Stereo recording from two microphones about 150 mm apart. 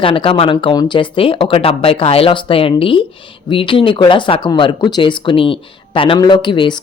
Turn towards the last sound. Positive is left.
turn(degrees=30)  # may be behind; listen again after turning